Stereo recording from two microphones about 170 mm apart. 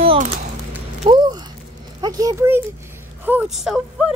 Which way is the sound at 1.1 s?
25° right (ahead or behind).